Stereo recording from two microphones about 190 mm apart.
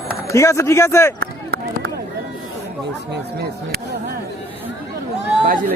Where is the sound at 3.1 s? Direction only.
60° right (ahead or behind).